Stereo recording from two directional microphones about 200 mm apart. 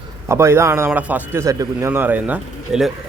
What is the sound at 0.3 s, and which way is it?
A man's voice, 15° right (ahead or behind).